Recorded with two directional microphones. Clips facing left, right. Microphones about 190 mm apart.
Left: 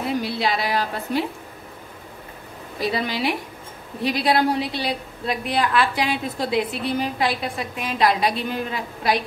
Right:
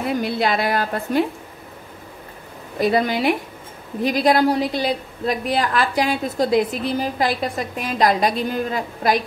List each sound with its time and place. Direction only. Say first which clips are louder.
0.2 s a woman's voice: right 3 dB; 50° right (ahead or behind)
2.8 s a woman's voice: right 6 dB; 50° right (ahead or behind)